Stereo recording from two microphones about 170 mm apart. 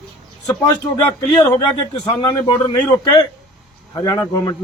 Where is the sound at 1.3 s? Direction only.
20° left (ahead or behind).